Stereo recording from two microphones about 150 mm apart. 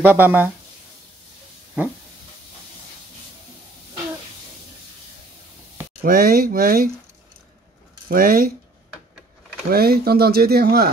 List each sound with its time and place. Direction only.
0.0 s speech: 15° right (ahead or behind)
6.0 s speech: 75° right (ahead or behind)
8.1 s speech: 70° right (ahead or behind)
9.7 s speech: 90° right